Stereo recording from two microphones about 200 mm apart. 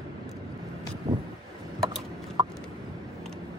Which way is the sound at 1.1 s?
20° right (ahead or behind).